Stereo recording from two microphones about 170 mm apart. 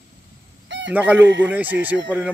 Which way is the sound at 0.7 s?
90° right.